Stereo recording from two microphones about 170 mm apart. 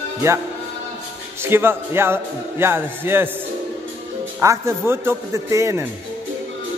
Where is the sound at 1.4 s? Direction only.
15° right (ahead or behind).